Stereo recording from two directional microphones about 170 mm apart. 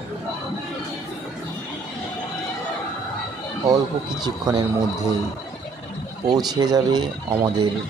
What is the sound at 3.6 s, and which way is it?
Speech, 25° right (ahead or behind).